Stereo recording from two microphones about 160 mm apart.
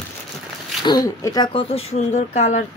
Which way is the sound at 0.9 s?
25° left (ahead or behind).